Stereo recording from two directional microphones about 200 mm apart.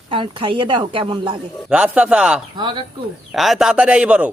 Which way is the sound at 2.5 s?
20° right (ahead or behind).